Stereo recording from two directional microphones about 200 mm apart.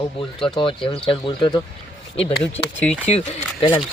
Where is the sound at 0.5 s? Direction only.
25° left (ahead or behind).